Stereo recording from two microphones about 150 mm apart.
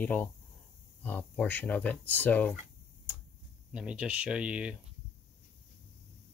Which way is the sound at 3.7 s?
5° right (ahead or behind).